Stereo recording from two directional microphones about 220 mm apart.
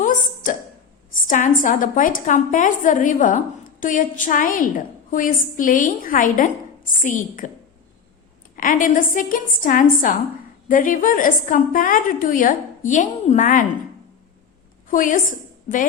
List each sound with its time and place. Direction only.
1.1 s a woman's voice: 35° left (ahead or behind)
8.5 s a woman's voice: 35° left (ahead or behind)
14.8 s a woman's voice: 40° left (ahead or behind)